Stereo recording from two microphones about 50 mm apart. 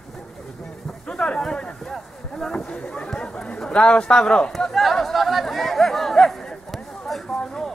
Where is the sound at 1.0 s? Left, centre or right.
Left.